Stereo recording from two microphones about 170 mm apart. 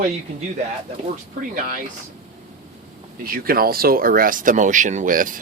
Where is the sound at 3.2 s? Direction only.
60° right (ahead or behind).